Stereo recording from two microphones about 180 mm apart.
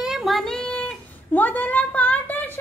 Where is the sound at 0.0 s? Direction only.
Centre (ahead or behind).